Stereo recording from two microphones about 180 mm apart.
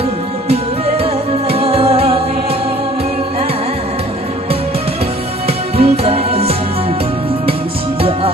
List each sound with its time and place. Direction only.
0.4 s music: 35° right (ahead or behind)
5.7 s music: 35° right (ahead or behind)